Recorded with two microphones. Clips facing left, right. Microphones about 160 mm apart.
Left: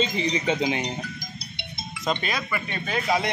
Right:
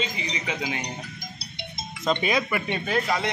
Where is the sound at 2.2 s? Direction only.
20° right (ahead or behind).